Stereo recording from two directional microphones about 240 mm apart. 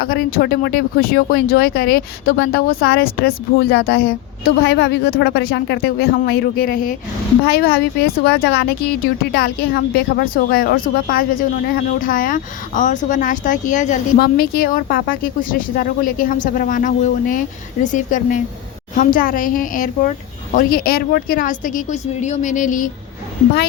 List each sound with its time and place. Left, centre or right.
0.0 s speech: left